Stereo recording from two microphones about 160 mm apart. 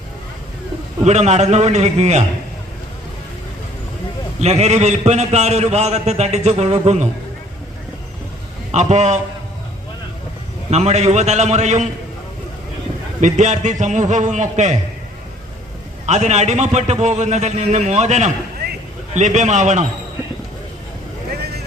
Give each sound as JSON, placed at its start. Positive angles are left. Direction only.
{"t": 1.0, "sound": "a man's voice", "side_deg": -45}
{"t": 4.4, "sound": "a man's voice", "side_deg": -45}
{"t": 8.7, "sound": "a man's voice", "side_deg": -45}
{"t": 10.7, "sound": "a man's voice", "side_deg": -45}
{"t": 13.2, "sound": "a man's voice", "side_deg": -50}
{"t": 16.0, "sound": "a man's voice", "side_deg": -45}